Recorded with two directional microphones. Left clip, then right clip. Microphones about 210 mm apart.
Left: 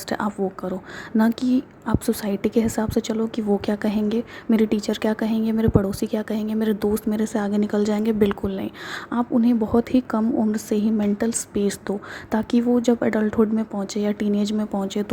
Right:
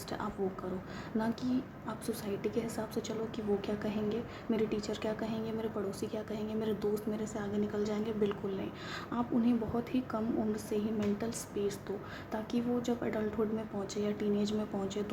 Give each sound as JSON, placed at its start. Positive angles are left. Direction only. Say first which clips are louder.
{"t": 1.2, "sound": "a woman's voice", "louder": "left 14 dB", "side_deg": 40}